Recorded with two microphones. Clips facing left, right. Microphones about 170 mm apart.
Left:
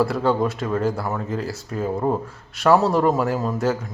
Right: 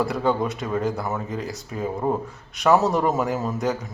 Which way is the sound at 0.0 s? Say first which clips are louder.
Left 3 dB; centre (ahead or behind).